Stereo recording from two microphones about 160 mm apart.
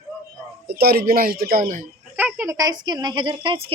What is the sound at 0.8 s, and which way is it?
Speech, 75° right (ahead or behind).